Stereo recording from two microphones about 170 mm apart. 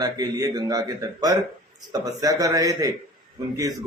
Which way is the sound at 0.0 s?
20° right (ahead or behind).